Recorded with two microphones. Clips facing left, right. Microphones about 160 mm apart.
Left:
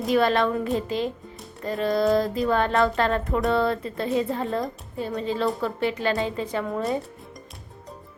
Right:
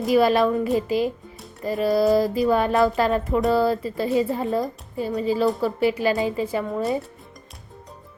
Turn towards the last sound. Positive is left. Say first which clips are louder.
# right 2 dB
turn(degrees=0)  # may be behind; listen again after turning